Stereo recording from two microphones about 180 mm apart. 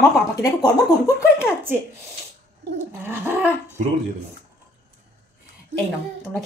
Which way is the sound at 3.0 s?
10° right (ahead or behind).